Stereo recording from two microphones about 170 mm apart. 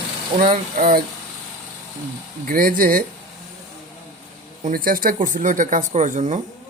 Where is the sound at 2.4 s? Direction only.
55° right (ahead or behind).